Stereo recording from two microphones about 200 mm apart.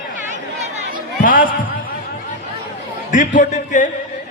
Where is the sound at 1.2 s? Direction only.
40° left (ahead or behind).